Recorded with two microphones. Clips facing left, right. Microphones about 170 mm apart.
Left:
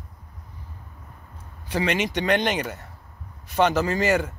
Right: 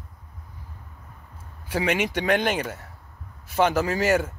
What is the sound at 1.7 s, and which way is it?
Speech, 10° right (ahead or behind).